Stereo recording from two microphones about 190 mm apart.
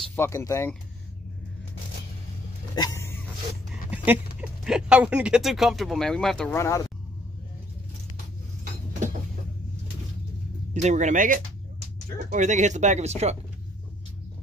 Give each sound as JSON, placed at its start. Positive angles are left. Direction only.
{"t": 0.0, "sound": "speech", "side_deg": 10}
{"t": 2.7, "sound": "hiccup", "side_deg": 20}
{"t": 3.9, "sound": "a sound", "side_deg": -10}
{"t": 4.4, "sound": "speech", "side_deg": -5}
{"t": 6.5, "sound": "speech", "side_deg": 15}
{"t": 10.7, "sound": "speech", "side_deg": -40}